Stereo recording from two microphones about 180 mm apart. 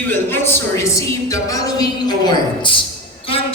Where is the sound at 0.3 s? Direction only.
15° left (ahead or behind).